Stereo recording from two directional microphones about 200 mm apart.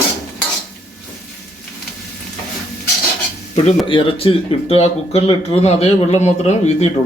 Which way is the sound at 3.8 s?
25° left (ahead or behind).